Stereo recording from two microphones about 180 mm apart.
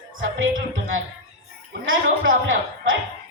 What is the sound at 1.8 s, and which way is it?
A man's voice, 90° right.